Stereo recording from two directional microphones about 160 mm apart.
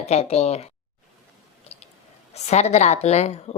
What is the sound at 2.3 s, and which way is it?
A woman's voice, 45° left (ahead or behind).